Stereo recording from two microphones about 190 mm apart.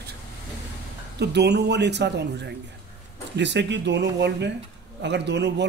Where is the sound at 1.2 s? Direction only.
60° right (ahead or behind).